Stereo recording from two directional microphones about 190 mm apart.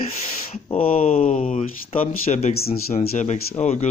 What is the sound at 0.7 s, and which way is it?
Speech, 30° left (ahead or behind).